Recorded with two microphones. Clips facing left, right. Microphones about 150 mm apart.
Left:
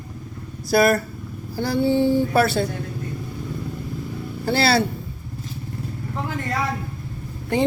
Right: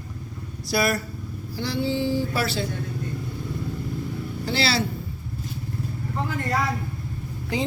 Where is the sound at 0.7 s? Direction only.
50° left (ahead or behind).